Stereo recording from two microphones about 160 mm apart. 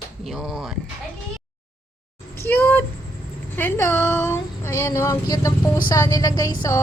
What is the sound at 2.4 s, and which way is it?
A woman's voice, 10° left (ahead or behind).